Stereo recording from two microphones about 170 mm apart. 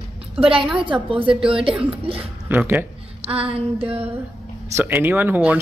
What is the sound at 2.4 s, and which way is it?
Speech, 10° right (ahead or behind).